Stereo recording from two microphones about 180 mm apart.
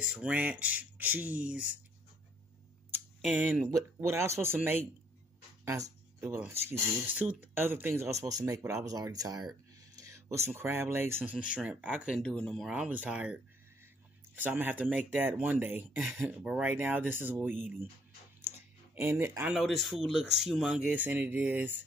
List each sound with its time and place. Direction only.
0.0 s speech: 5° right (ahead or behind)
2.9 s a sound: 5° right (ahead or behind)
3.7 s speech: 15° right (ahead or behind)
9.9 s a sound: 15° right (ahead or behind)
10.5 s speech: 10° right (ahead or behind)
18.9 s speech: 15° right (ahead or behind)